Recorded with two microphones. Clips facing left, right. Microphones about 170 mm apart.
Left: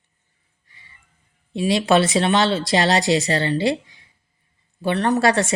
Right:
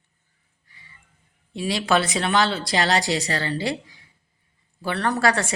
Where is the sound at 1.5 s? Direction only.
20° left (ahead or behind).